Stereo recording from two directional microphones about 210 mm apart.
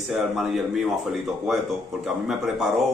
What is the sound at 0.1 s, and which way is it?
Speech, centre (ahead or behind).